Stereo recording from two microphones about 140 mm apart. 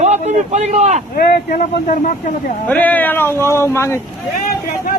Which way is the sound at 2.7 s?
10° left (ahead or behind).